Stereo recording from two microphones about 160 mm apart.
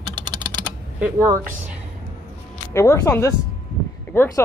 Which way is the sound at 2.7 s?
20° left (ahead or behind).